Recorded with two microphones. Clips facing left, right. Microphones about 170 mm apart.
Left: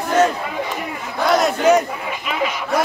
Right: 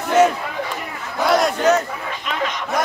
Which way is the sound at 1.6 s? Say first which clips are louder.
Left 2 dB; 10° left (ahead or behind).